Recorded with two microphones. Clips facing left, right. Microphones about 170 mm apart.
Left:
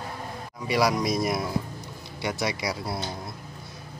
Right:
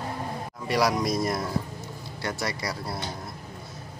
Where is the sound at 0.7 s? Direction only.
Centre (ahead or behind).